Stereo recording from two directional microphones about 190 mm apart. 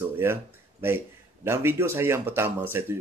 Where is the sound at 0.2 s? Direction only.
10° right (ahead or behind).